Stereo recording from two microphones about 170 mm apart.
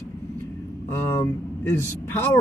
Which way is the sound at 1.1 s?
15° left (ahead or behind).